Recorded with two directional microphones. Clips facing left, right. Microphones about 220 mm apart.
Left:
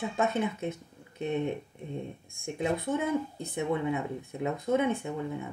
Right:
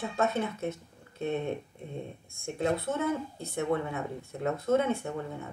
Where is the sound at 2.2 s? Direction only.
15° left (ahead or behind).